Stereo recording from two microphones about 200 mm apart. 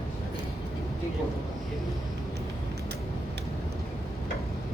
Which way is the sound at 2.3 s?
55° right (ahead or behind).